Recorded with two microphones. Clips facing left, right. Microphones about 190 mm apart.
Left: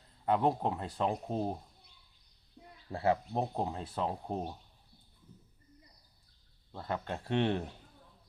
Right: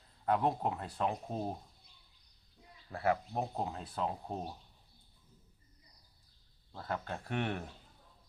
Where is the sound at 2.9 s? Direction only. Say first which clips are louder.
Left 2 dB; 25° left (ahead or behind).